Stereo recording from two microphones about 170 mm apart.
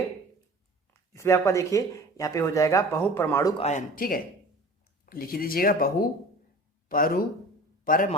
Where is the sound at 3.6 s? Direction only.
45° left (ahead or behind).